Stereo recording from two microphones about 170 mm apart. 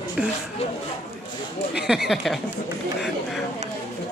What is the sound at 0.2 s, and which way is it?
Speech, 5° right (ahead or behind).